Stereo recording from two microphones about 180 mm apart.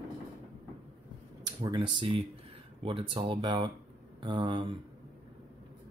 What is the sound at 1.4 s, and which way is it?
Speech, 25° right (ahead or behind).